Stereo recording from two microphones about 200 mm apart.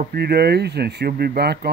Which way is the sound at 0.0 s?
50° right (ahead or behind).